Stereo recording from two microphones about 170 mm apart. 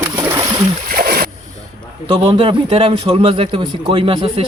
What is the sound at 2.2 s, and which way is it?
A man's voice, 35° right (ahead or behind).